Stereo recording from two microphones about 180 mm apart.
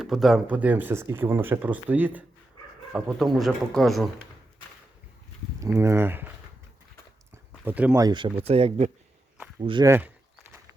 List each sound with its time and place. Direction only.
0.0 s speech: centre (ahead or behind)
5.7 s speech: 15° right (ahead or behind)
7.6 s speech: 10° right (ahead or behind)
8.0 s speech: 25° right (ahead or behind)
9.8 s speech: 15° right (ahead or behind)